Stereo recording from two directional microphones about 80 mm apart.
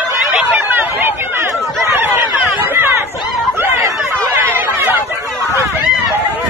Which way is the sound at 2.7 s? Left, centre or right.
Right.